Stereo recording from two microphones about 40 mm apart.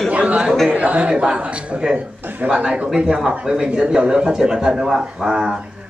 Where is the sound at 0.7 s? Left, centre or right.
Right.